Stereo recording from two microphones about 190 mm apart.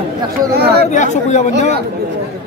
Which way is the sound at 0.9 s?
40° left (ahead or behind).